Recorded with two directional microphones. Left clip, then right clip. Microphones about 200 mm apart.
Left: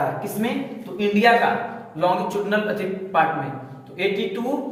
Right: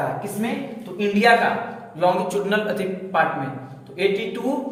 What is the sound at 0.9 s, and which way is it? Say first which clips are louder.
A man's voice: even; 25° right (ahead or behind).